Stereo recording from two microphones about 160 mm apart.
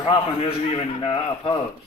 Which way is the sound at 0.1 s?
40° left (ahead or behind).